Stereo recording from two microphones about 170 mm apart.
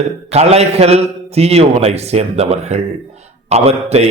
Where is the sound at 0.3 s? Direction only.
40° right (ahead or behind).